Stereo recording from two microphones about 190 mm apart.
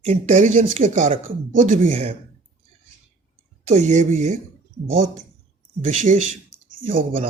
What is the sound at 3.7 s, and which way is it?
Speech, 40° right (ahead or behind).